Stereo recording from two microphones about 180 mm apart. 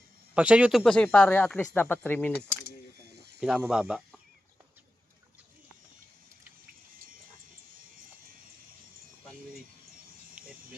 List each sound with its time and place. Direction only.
0.3 s speech: 5° right (ahead or behind); by 2.3 s 10° left (ahead or behind)
3.2 s snake: 65° right (ahead or behind)
3.4 s speech: 5° right (ahead or behind)
10.4 s a sound: 10° right (ahead or behind)